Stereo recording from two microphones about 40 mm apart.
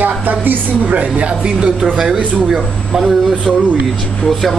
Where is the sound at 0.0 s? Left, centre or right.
Right.